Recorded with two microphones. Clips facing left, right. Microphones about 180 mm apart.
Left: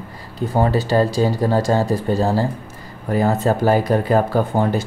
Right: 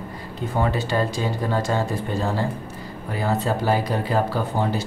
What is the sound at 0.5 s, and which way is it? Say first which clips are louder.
Speech: left 6 dB; 35° left (ahead or behind).